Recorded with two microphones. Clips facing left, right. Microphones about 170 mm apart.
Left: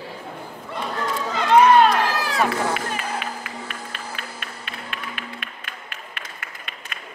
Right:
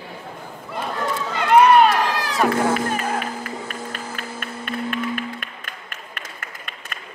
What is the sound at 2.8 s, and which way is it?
Music, 45° right (ahead or behind).